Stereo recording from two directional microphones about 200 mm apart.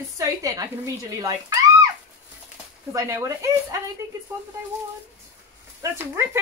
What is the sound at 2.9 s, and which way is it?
Speech, 15° right (ahead or behind).